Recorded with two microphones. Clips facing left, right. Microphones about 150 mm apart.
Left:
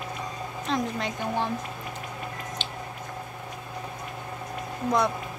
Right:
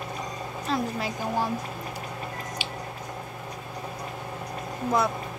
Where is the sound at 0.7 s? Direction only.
5° right (ahead or behind).